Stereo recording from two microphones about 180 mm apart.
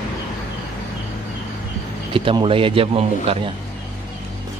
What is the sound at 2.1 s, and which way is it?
A man's voice, 30° right (ahead or behind).